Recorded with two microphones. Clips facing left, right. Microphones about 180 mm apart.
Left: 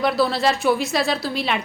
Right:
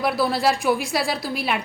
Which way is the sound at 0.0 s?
10° right (ahead or behind).